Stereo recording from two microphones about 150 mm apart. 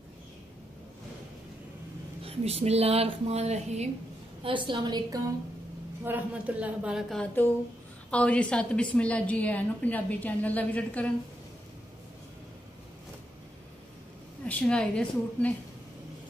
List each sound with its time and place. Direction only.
2.2 s speech: 45° right (ahead or behind)
4.4 s a woman's voice: 35° right (ahead or behind)
6.0 s a woman's voice: 10° right (ahead or behind); by 11.1 s 10° left (ahead or behind)
14.4 s a woman's voice: 5° left (ahead or behind)